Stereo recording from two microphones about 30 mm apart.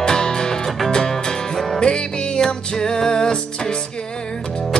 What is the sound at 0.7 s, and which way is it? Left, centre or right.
Music, centre.